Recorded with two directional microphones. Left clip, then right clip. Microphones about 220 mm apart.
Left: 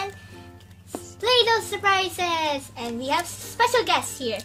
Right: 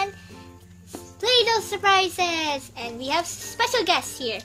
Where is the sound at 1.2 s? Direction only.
45° right (ahead or behind).